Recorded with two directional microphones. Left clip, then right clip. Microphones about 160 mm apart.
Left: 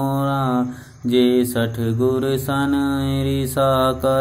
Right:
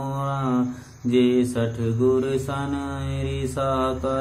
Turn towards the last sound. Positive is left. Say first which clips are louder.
# left 6 dB
turn(degrees=35)  # may be behind; listen again after turning